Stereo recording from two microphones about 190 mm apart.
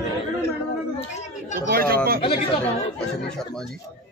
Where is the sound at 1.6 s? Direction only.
50° right (ahead or behind).